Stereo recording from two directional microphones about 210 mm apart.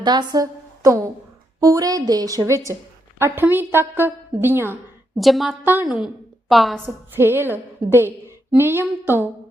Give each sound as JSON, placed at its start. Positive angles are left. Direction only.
{"t": 0.0, "sound": "a woman's voice", "side_deg": -20}
{"t": 6.8, "sound": "a woman's voice", "side_deg": -10}